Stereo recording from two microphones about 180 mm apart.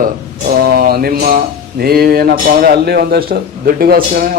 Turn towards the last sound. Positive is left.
turn(degrees=-55)  # may be behind; listen again after turning